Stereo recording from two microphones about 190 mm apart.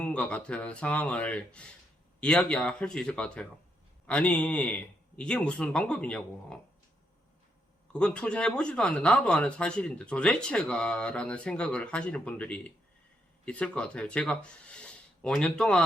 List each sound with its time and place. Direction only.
0.0 s a man's voice: 5° left (ahead or behind)
7.9 s speech: 5° left (ahead or behind)